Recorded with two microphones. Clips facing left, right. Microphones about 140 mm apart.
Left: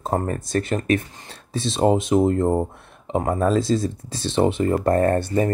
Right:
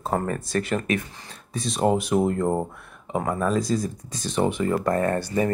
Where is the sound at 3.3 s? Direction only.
30° left (ahead or behind).